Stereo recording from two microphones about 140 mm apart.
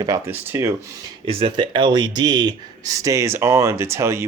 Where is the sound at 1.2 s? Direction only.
40° right (ahead or behind).